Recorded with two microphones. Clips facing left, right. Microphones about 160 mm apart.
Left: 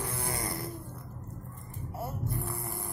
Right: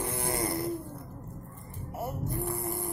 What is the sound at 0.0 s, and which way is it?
Vehicle, 20° right (ahead or behind).